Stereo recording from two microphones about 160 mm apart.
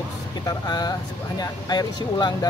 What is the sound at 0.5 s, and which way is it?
Speech, 25° left (ahead or behind).